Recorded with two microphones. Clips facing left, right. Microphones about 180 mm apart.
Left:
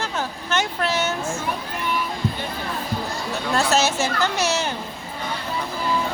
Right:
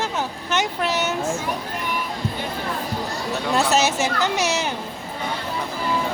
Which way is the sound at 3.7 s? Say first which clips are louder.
Right 1 dB; 20° right (ahead or behind).